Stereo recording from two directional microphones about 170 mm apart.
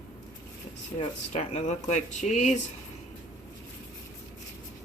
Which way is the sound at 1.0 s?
40° left (ahead or behind).